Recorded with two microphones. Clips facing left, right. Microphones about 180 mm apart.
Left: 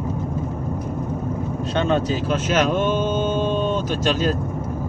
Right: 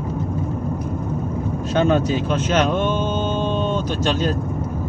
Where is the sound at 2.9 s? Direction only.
10° left (ahead or behind).